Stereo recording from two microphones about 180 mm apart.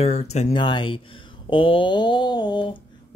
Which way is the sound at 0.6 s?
25° left (ahead or behind).